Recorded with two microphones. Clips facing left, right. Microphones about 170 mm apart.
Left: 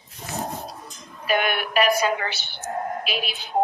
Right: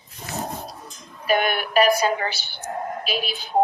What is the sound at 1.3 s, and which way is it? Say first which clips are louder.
A woman's voice: right 2 dB; 40° right (ahead or behind).